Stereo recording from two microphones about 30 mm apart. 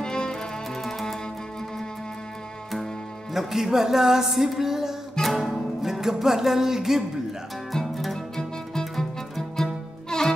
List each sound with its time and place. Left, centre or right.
0.0 s music: left
0.8 s music: centre
3.3 s speech: centre
5.2 s music: left
5.5 s music: centre
6.1 s speech: centre
7.7 s music: centre
9.6 s music: centre
10.0 s music: left